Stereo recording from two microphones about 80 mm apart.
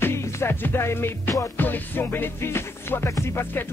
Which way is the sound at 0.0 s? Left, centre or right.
Left.